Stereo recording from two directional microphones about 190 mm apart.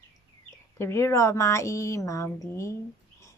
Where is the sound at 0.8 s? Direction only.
15° left (ahead or behind).